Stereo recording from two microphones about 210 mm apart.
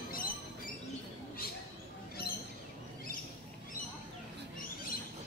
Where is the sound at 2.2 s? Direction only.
45° left (ahead or behind).